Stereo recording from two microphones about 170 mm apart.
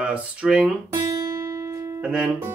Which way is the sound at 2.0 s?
5° right (ahead or behind).